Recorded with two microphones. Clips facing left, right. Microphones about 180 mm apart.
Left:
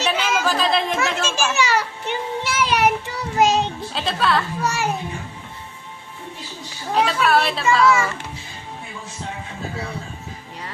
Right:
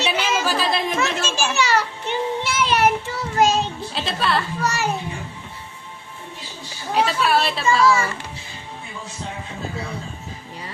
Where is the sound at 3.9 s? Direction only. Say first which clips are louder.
Left 2 dB; centre (ahead or behind).